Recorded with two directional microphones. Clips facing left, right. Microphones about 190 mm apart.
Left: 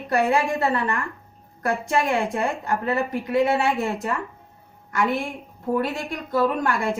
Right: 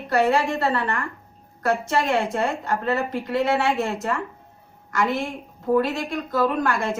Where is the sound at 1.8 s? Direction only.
15° left (ahead or behind).